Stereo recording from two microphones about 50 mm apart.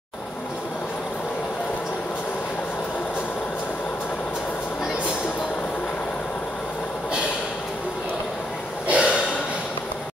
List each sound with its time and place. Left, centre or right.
8.8 s gasp: right